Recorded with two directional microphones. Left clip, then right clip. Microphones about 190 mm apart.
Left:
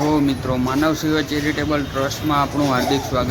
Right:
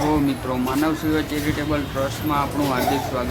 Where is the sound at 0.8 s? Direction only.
20° left (ahead or behind).